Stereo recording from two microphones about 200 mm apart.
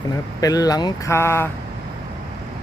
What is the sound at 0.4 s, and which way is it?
Speech, 20° left (ahead or behind).